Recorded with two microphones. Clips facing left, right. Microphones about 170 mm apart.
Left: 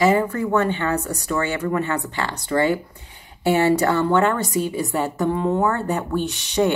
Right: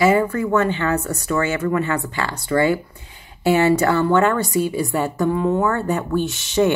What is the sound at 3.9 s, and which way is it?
Speech, 20° left (ahead or behind).